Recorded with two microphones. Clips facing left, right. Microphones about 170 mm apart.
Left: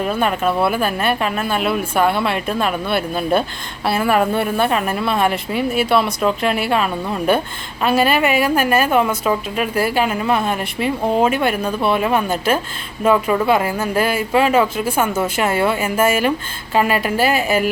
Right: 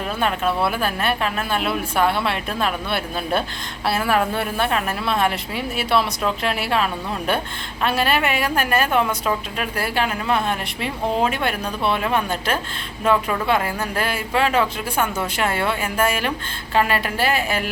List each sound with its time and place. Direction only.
0.2 s a woman's voice: 5° left (ahead or behind)